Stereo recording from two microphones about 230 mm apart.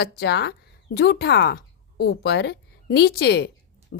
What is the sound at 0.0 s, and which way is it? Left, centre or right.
A woman's voice, left.